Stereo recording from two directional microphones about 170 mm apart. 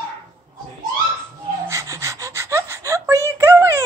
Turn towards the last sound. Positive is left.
turn(degrees=-15)  # may be behind; listen again after turning